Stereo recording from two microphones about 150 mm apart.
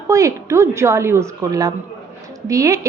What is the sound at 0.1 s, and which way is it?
A woman's voice, 20° right (ahead or behind).